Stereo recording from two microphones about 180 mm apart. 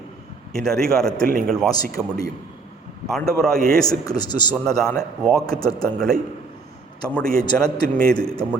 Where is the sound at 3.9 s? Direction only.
20° left (ahead or behind).